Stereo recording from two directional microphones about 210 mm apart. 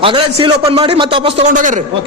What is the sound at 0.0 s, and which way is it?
A man's voice, 25° right (ahead or behind).